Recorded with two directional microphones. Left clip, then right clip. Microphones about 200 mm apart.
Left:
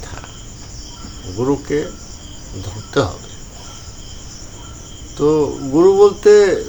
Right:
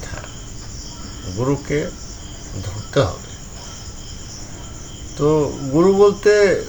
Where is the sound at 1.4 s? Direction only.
15° left (ahead or behind).